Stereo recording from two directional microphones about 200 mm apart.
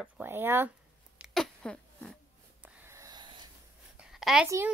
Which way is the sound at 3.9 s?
5° right (ahead or behind).